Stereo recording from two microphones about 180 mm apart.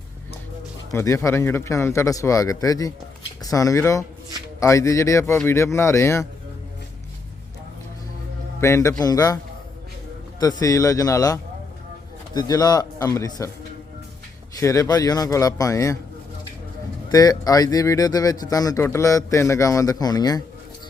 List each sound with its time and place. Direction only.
0.9 s speech: 15° left (ahead or behind)
8.6 s speech: 15° left (ahead or behind)
10.6 s speech: 20° left (ahead or behind)
14.6 s speech: 15° left (ahead or behind)
17.1 s speech: 20° left (ahead or behind)